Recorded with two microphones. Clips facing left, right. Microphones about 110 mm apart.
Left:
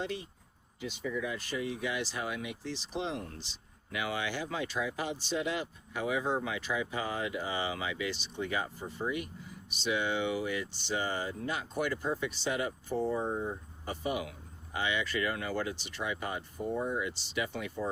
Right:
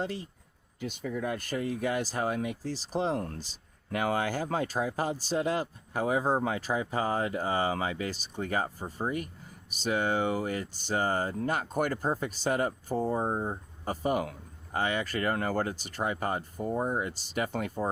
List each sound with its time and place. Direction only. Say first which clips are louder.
0.0 s speech: right 3 dB; 40° right (ahead or behind)